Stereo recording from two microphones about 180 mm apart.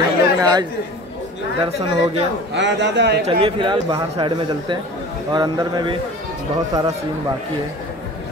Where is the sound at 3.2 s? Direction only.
30° right (ahead or behind).